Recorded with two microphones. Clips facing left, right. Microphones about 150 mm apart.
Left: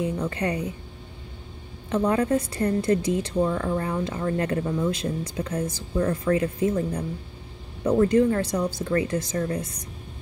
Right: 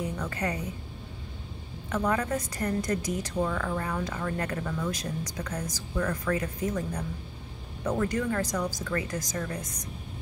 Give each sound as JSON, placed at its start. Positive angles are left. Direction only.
{"t": 0.2, "sound": "a woman's voice", "side_deg": 30}
{"t": 1.9, "sound": "a woman's voice", "side_deg": 30}